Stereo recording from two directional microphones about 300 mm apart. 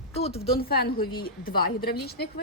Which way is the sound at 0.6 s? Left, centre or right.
Left.